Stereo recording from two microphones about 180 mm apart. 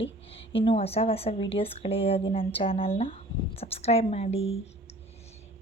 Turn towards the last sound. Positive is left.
turn(degrees=35)  # may be behind; listen again after turning